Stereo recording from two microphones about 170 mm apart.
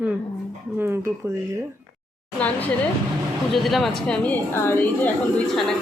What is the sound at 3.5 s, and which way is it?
Speech, centre (ahead or behind).